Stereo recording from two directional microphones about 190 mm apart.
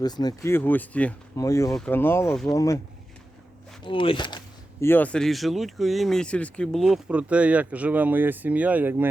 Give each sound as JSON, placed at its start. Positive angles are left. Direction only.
{"t": 0.0, "sound": "speech", "side_deg": 20}
{"t": 3.8, "sound": "speech", "side_deg": 25}
{"t": 4.9, "sound": "speech", "side_deg": 10}